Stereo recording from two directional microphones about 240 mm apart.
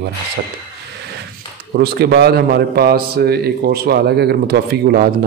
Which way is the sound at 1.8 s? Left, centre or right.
Right.